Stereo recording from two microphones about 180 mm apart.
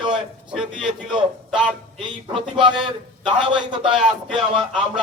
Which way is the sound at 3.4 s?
25° right (ahead or behind).